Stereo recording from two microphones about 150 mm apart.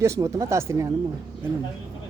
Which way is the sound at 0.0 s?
20° right (ahead or behind).